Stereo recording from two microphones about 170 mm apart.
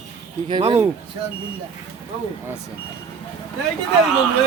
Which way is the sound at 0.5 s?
35° right (ahead or behind).